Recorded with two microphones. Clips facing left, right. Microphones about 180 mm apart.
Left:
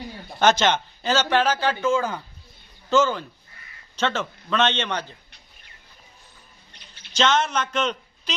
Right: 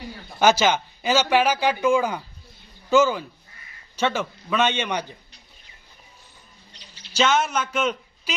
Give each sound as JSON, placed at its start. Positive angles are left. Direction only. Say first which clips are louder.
{"t": 0.3, "sound": "speech", "louder": "right 1 dB", "side_deg": -10}
{"t": 6.7, "sound": "bird", "louder": "right 3 dB", "side_deg": 55}
{"t": 7.1, "sound": "a man's voice", "louder": "even", "side_deg": -10}